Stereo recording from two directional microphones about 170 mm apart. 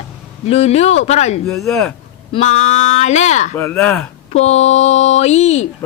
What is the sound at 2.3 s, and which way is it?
Speech, 40° left (ahead or behind).